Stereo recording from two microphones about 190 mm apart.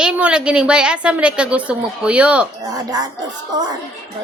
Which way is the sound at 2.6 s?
20° right (ahead or behind).